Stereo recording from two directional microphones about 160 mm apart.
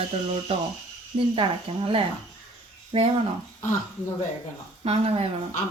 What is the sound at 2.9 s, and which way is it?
Speech, 35° right (ahead or behind).